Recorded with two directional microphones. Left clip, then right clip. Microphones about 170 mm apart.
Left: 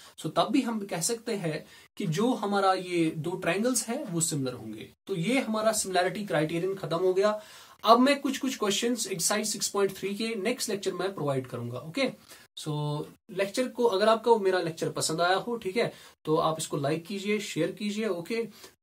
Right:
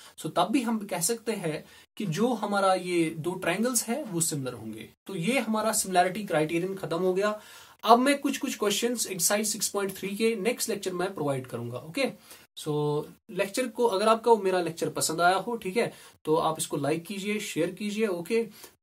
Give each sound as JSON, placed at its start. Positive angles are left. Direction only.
{"t": 0.2, "sound": "speech", "side_deg": -25}